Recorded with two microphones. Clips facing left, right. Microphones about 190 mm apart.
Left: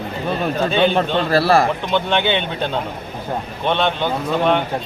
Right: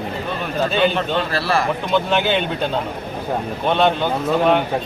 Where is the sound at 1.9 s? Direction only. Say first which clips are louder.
Right 2 dB; 5° right (ahead or behind).